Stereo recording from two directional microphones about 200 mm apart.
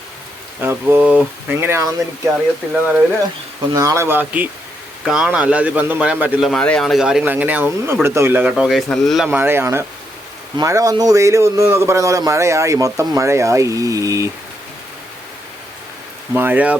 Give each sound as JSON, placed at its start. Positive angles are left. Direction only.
{"t": 0.6, "sound": "speech", "side_deg": -10}
{"t": 2.6, "sound": "a man's voice", "side_deg": 5}
{"t": 3.8, "sound": "a man's voice", "side_deg": -15}
{"t": 16.3, "sound": "speech", "side_deg": -10}